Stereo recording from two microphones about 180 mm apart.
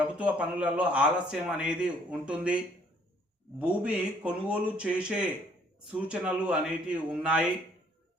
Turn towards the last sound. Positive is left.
turn(degrees=-5)  # may be behind; listen again after turning